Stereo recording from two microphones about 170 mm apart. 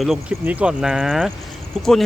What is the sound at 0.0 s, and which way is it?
Speech, 5° right (ahead or behind).